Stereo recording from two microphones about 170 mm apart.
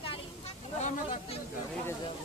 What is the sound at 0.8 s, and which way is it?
Speech, 45° left (ahead or behind).